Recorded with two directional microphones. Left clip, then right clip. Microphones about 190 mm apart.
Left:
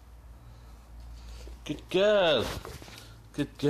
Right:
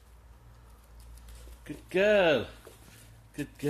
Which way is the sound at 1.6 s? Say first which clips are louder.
Left 1 dB; 10° left (ahead or behind).